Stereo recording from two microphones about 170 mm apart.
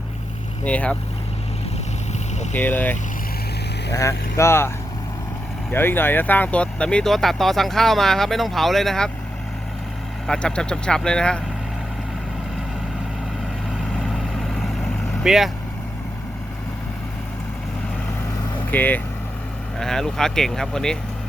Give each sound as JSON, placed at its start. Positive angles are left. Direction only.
{"t": 0.6, "sound": "speech", "side_deg": 10}
{"t": 2.5, "sound": "speech", "side_deg": 10}
{"t": 5.7, "sound": "speech", "side_deg": 10}
{"t": 10.2, "sound": "speech", "side_deg": 5}
{"t": 13.9, "sound": "vehicle", "side_deg": 0}
{"t": 15.2, "sound": "speech", "side_deg": 0}
{"t": 18.7, "sound": "speech", "side_deg": 10}